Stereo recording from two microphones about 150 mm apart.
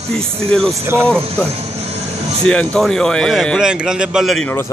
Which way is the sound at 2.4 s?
5° left (ahead or behind).